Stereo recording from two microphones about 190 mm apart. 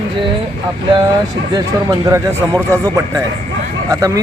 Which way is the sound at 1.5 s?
20° right (ahead or behind).